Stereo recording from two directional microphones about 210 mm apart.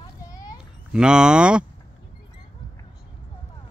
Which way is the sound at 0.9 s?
5° right (ahead or behind).